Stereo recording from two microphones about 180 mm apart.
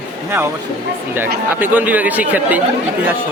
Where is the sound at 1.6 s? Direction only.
10° right (ahead or behind).